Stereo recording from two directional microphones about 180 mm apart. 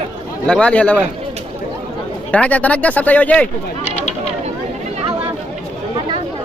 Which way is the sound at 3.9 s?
35° left (ahead or behind).